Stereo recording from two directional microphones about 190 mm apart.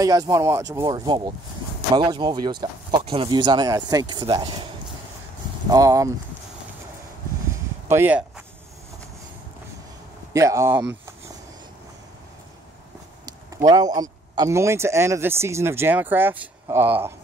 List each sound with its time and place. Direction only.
0.0 s speech: 20° right (ahead or behind)
5.7 s speech: 15° right (ahead or behind)
7.9 s speech: 10° right (ahead or behind)
10.3 s speech: 15° right (ahead or behind)
13.2 s speech: 20° right (ahead or behind)